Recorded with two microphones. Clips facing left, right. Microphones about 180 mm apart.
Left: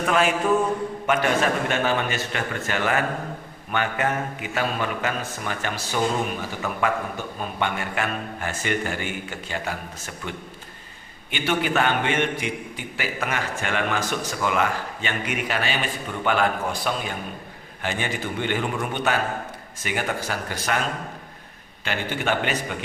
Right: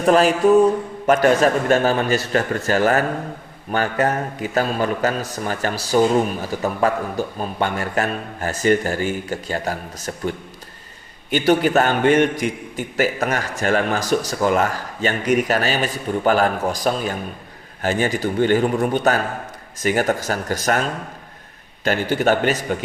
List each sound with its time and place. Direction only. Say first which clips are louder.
0.0 s a man's voice: right 7 dB; 35° right (ahead or behind)
21.8 s a man's voice: right 8 dB; 40° right (ahead or behind)